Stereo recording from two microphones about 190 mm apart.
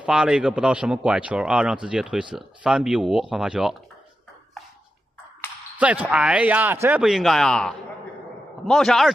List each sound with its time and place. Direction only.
0.0 s speech: 5° right (ahead or behind)
5.8 s speech: 5° right (ahead or behind)